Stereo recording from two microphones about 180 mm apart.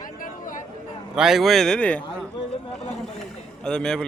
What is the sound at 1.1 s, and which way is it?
Speech, 5° right (ahead or behind).